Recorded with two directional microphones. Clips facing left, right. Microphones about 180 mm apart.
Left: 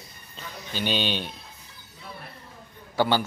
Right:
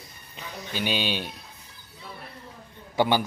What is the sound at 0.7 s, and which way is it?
Speech, 10° right (ahead or behind).